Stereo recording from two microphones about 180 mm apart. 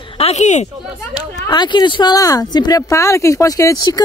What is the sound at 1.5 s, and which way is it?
Speech, 25° left (ahead or behind).